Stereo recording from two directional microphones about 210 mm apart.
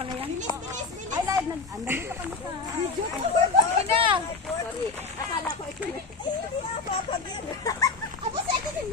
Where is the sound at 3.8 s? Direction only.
25° right (ahead or behind).